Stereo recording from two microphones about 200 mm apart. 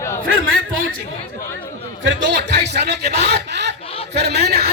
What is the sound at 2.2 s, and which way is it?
A man's voice, 60° right (ahead or behind).